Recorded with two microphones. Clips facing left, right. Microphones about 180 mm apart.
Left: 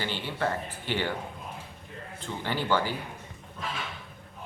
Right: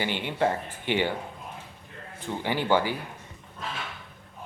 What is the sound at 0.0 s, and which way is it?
Speech, 15° right (ahead or behind).